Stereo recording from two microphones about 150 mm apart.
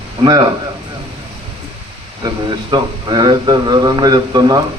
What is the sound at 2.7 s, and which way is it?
A man's voice, 30° right (ahead or behind).